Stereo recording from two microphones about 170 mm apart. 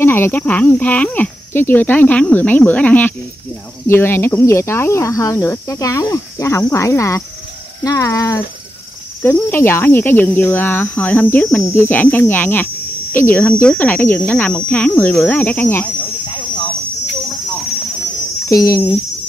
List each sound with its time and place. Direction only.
0.0 s hum: 15° left (ahead or behind)
7.8 s speech: 20° left (ahead or behind)
9.2 s hum: 15° left (ahead or behind)
18.5 s speech: 20° left (ahead or behind)